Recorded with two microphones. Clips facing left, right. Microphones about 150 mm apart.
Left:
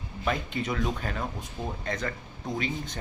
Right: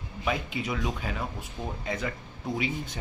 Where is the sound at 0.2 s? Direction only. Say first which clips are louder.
Left 1 dB; 5° right (ahead or behind).